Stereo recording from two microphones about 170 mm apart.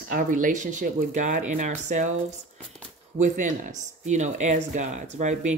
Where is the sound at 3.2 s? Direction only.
50° right (ahead or behind).